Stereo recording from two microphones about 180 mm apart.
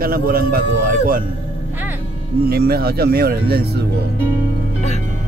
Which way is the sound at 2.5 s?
60° right (ahead or behind).